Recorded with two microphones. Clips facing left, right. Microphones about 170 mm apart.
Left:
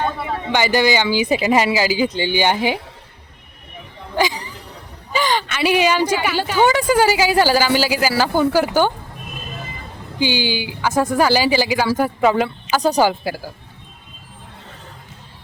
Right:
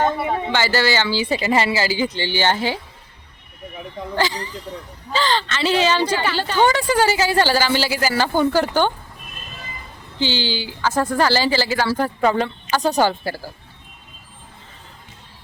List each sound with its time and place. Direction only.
0.5 s speech: 15° left (ahead or behind)
4.1 s a sound: 15° left (ahead or behind)
5.1 s speech: 15° left (ahead or behind)
10.2 s speech: 15° left (ahead or behind)